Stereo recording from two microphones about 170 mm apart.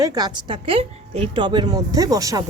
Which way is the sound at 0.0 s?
25° right (ahead or behind).